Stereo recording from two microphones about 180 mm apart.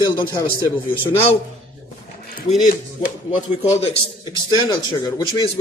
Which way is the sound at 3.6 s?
35° left (ahead or behind).